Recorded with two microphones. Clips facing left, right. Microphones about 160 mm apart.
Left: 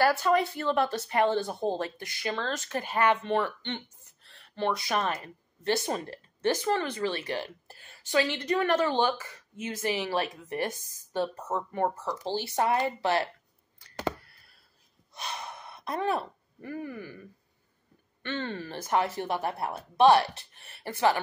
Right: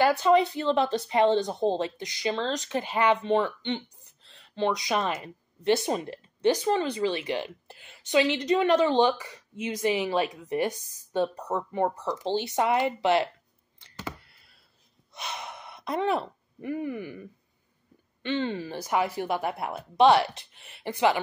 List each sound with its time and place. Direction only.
0.0 s a woman's voice: 20° right (ahead or behind)
15.3 s a sound: 20° right (ahead or behind)
18.2 s a woman's voice: 15° right (ahead or behind)